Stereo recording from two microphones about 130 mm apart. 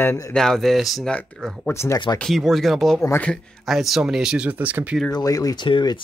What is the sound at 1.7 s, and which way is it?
Speech, 20° left (ahead or behind).